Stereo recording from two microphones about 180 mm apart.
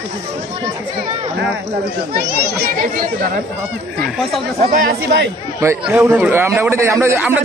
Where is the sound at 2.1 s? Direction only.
55° right (ahead or behind).